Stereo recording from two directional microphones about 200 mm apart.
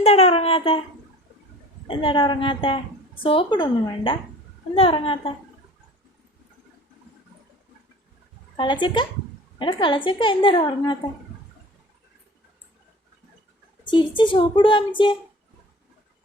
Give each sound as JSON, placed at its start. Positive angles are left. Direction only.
{"t": 0.0, "sound": "a woman's voice", "side_deg": 30}
{"t": 1.9, "sound": "a woman's voice", "side_deg": 25}
{"t": 8.5, "sound": "a woman's voice", "side_deg": 25}
{"t": 14.2, "sound": "a woman's voice", "side_deg": 25}